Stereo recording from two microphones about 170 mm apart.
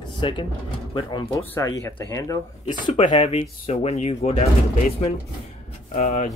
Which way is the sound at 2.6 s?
40° left (ahead or behind).